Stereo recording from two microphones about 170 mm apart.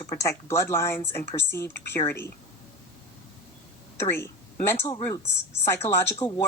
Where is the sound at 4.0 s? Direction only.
15° left (ahead or behind).